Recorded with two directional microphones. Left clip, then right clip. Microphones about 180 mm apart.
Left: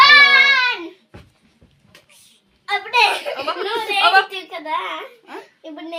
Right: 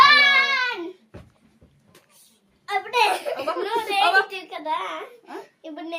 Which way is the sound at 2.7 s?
25° left (ahead or behind).